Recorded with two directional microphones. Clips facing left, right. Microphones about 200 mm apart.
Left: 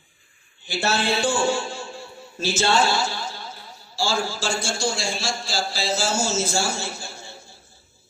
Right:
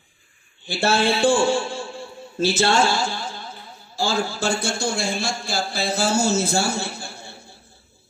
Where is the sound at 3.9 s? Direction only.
60° right (ahead or behind).